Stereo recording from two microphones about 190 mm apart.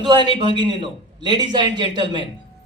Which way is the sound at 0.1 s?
25° right (ahead or behind).